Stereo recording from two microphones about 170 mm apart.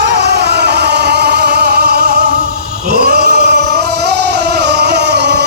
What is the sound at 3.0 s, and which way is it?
Music, 65° right (ahead or behind).